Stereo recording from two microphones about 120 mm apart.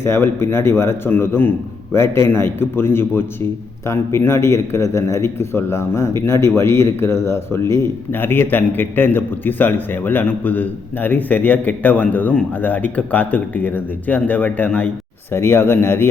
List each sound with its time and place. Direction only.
0.0 s a man's voice: 20° left (ahead or behind)